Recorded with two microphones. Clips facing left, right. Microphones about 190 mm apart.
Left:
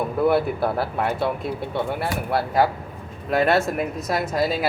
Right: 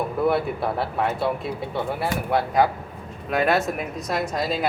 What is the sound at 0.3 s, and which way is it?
Speech, centre (ahead or behind).